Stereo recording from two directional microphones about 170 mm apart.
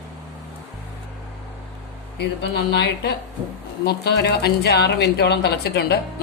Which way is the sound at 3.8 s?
75° left (ahead or behind).